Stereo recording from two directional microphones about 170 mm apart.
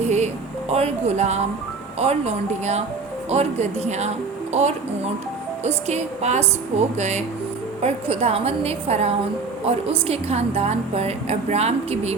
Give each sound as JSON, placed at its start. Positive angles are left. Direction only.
{"t": 0.0, "sound": "a sound", "side_deg": -40}
{"t": 0.7, "sound": "a woman's voice", "side_deg": -40}
{"t": 5.6, "sound": "a woman's voice", "side_deg": -40}